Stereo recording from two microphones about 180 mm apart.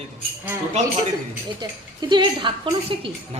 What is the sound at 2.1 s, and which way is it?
A woman's voice, 25° right (ahead or behind).